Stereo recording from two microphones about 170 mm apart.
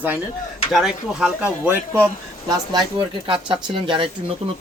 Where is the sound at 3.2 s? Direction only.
30° right (ahead or behind).